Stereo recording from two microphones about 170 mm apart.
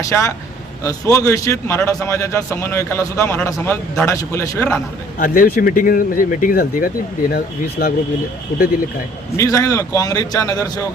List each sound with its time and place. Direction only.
0.0 s a man's voice: 15° left (ahead or behind)
5.2 s speech: 55° left (ahead or behind)
9.4 s a man's voice: 20° left (ahead or behind)